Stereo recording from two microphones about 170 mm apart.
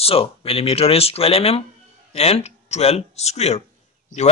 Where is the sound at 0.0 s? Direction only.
35° left (ahead or behind).